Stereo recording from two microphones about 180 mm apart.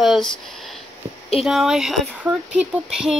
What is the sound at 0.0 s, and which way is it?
Speech, centre (ahead or behind).